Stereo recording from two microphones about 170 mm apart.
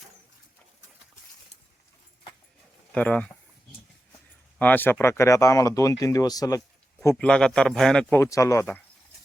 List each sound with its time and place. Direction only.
2.9 s speech: 5° left (ahead or behind)
4.5 s speech: 10° left (ahead or behind)
7.0 s speech: 10° left (ahead or behind)